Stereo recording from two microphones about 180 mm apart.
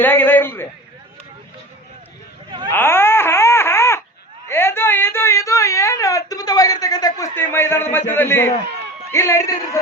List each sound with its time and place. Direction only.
0.0 s speech: 10° left (ahead or behind)
2.7 s a sound: 10° left (ahead or behind)
4.4 s speech: 15° left (ahead or behind)